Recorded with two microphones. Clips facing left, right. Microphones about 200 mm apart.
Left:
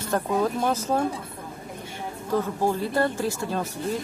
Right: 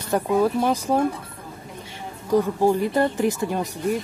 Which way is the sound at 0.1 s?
10° right (ahead or behind).